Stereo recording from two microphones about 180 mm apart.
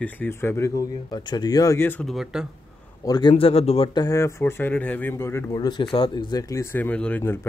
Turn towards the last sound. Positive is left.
turn(degrees=10)  # may be behind; listen again after turning